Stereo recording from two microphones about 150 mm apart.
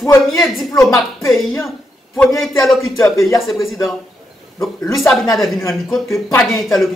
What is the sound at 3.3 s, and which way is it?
Speech, centre (ahead or behind).